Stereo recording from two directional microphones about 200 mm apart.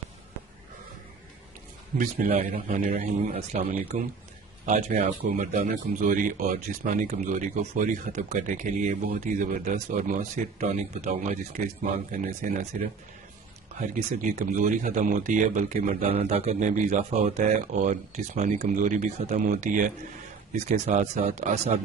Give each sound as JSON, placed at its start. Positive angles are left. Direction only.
{"t": 2.0, "sound": "speech", "side_deg": -45}
{"t": 2.3, "sound": "speech", "side_deg": -30}
{"t": 13.7, "sound": "speech", "side_deg": -40}